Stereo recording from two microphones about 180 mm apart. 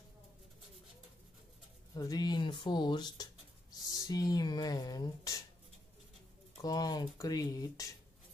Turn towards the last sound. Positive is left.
turn(degrees=20)  # may be behind; listen again after turning